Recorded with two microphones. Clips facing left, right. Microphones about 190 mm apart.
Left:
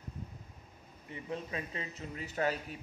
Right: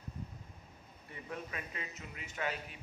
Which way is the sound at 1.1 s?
25° left (ahead or behind).